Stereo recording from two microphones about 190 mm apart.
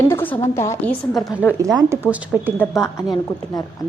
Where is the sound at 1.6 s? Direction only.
15° right (ahead or behind).